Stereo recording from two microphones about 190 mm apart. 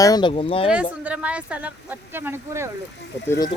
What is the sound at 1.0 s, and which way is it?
Speech, 5° right (ahead or behind).